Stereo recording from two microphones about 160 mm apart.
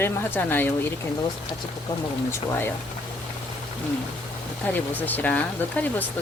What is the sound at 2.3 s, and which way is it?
Speech, 15° left (ahead or behind).